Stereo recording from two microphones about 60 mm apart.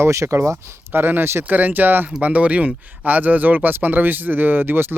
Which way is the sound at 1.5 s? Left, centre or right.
Right.